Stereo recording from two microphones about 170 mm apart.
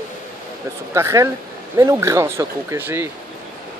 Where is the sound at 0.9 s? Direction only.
15° right (ahead or behind).